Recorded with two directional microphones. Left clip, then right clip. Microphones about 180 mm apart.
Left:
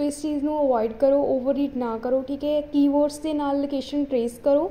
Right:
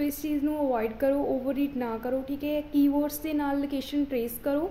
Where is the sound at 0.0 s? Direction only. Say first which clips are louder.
Left 4 dB; 5° left (ahead or behind).